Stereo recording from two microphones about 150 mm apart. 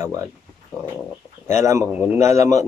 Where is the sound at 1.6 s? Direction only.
20° right (ahead or behind).